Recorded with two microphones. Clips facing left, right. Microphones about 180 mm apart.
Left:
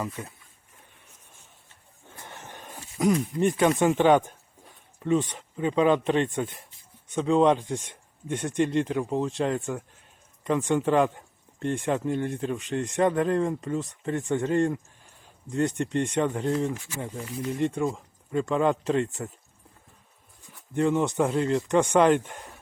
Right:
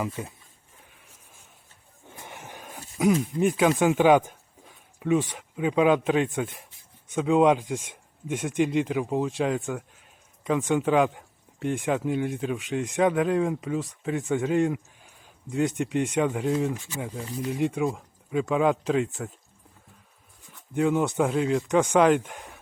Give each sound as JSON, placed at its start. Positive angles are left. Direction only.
{"t": 0.2, "sound": "speech", "side_deg": -15}
{"t": 2.1, "sound": "music", "side_deg": -15}
{"t": 2.9, "sound": "speech", "side_deg": -5}
{"t": 20.7, "sound": "speech", "side_deg": -5}